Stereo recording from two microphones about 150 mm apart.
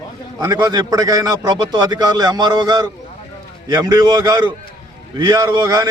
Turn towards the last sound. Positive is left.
turn(degrees=-25)  # may be behind; listen again after turning